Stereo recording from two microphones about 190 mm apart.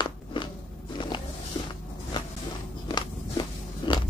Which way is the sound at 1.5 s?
25° left (ahead or behind).